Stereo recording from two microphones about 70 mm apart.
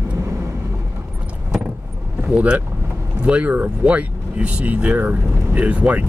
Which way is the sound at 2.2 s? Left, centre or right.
Centre.